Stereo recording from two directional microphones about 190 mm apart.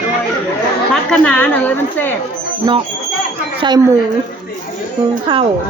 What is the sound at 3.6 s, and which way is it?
Speech, 25° right (ahead or behind).